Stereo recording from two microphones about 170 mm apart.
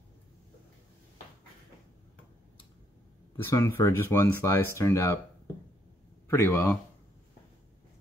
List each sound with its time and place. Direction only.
3.4 s speech: 15° left (ahead or behind)
6.2 s speech: 15° left (ahead or behind)